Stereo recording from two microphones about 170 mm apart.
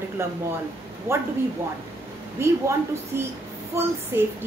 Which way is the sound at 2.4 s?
15° right (ahead or behind).